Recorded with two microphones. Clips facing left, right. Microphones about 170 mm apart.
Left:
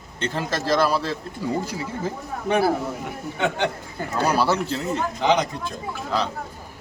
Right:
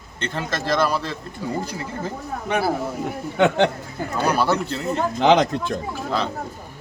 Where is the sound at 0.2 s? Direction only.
5° left (ahead or behind).